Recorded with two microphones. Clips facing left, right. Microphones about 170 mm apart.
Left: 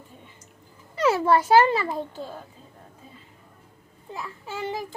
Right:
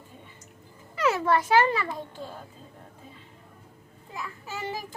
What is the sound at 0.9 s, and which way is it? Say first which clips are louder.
A child's voice: left 4 dB; 30° left (ahead or behind).